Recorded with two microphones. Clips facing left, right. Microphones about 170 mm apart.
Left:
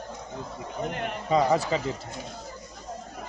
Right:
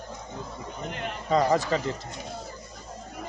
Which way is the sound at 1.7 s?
5° left (ahead or behind).